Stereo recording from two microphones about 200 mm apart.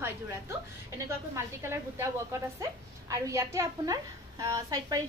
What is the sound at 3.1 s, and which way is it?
A woman's voice, 15° right (ahead or behind).